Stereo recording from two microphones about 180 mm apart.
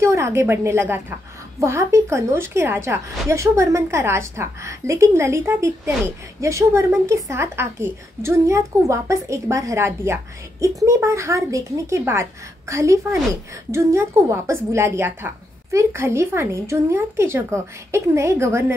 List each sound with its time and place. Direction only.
0.0 s a woman's voice: 15° right (ahead or behind)